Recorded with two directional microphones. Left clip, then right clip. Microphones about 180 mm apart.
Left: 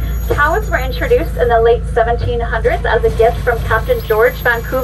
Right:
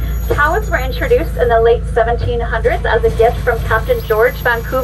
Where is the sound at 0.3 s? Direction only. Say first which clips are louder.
Even; 20° left (ahead or behind).